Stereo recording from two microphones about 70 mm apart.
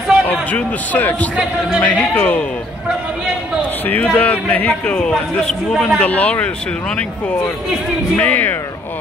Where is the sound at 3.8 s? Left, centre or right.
Left.